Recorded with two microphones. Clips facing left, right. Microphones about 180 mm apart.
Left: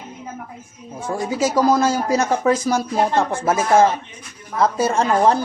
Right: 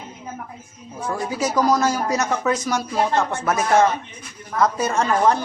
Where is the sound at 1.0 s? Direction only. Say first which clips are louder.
Left 3 dB; 25° left (ahead or behind).